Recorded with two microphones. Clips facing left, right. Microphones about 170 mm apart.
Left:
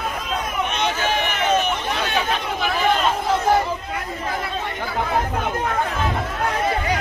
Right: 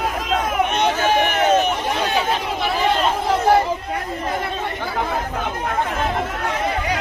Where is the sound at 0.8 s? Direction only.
50° right (ahead or behind).